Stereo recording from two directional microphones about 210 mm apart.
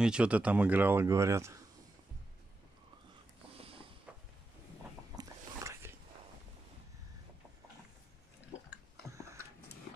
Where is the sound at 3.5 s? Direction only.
25° right (ahead or behind).